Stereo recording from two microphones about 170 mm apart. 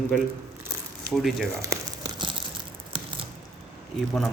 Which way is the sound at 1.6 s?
20° right (ahead or behind).